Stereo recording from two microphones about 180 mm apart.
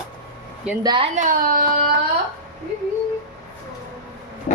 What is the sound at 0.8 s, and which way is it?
Speech, 25° right (ahead or behind).